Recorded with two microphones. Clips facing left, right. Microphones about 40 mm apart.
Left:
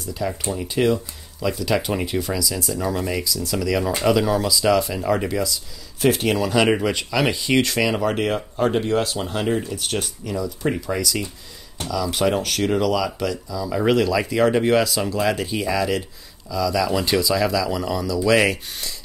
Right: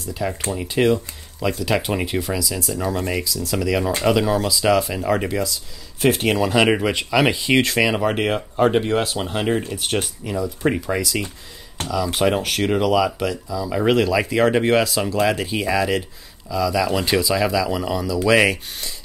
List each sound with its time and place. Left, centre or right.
0.2 s speech: centre
3.3 s speech: centre